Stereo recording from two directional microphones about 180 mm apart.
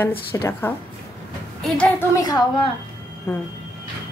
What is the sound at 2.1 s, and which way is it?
Speech, 20° left (ahead or behind).